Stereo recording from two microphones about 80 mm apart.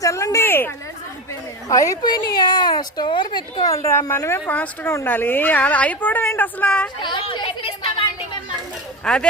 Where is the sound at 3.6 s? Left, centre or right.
Left.